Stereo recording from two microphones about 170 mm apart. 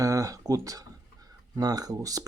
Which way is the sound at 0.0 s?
20° right (ahead or behind).